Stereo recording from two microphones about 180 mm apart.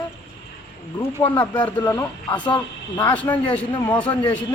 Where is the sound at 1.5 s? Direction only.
10° left (ahead or behind).